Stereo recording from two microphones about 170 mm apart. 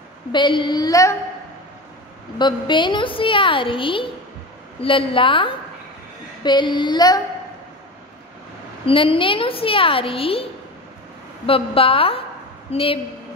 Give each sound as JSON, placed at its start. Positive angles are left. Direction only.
{"t": 0.3, "sound": "a woman's voice", "side_deg": 30}
{"t": 2.3, "sound": "a woman's voice", "side_deg": 25}
{"t": 8.8, "sound": "a woman's voice", "side_deg": 30}